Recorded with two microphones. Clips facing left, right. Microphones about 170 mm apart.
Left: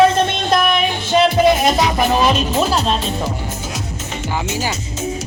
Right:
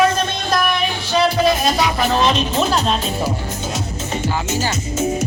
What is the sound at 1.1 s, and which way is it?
Music, 20° left (ahead or behind).